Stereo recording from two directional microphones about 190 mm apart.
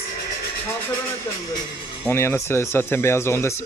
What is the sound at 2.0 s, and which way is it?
Speech, 15° left (ahead or behind).